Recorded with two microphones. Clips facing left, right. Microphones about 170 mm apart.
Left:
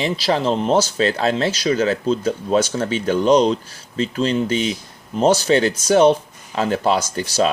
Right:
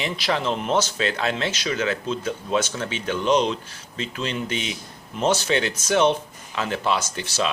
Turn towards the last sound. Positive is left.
turn(degrees=40)  # may be behind; listen again after turning